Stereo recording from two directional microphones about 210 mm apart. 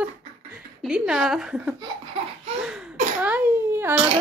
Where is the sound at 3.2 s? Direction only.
10° right (ahead or behind).